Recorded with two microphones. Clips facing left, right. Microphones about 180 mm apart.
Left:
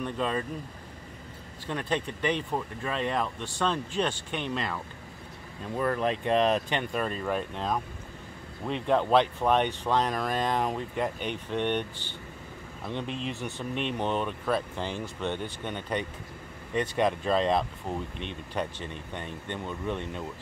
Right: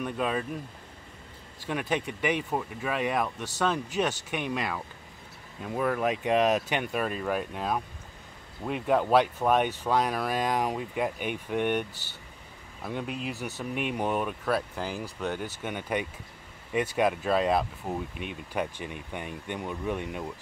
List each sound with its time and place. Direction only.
0.0 s speech: 10° right (ahead or behind)
1.7 s speech: 10° right (ahead or behind)
12.8 s speech: 5° right (ahead or behind)